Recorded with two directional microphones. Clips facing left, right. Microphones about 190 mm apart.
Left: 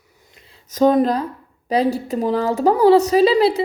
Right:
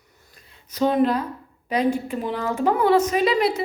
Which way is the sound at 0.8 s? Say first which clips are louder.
Left 4 dB; 40° left (ahead or behind).